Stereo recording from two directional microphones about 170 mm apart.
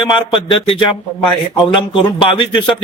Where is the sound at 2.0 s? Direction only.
30° left (ahead or behind).